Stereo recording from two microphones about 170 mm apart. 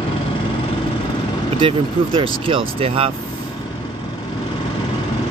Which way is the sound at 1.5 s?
30° right (ahead or behind).